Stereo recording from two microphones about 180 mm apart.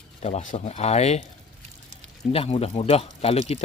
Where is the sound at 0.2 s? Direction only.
40° left (ahead or behind).